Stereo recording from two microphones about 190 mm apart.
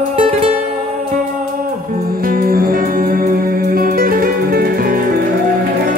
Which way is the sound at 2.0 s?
50° right (ahead or behind).